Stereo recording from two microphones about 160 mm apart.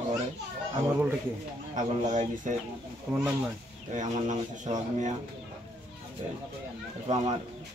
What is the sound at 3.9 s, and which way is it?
Speech, 50° right (ahead or behind).